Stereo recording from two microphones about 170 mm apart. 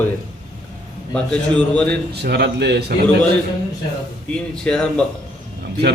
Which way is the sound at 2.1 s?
75° right (ahead or behind).